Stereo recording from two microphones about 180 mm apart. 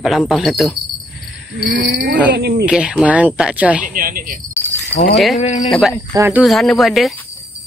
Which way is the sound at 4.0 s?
50° right (ahead or behind).